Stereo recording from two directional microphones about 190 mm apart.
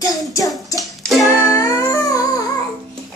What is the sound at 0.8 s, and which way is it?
Music, centre (ahead or behind).